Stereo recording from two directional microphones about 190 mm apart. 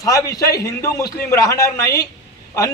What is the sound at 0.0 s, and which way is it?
A man's voice, 20° left (ahead or behind).